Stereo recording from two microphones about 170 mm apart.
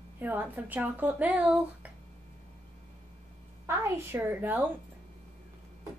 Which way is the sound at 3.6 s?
15° right (ahead or behind).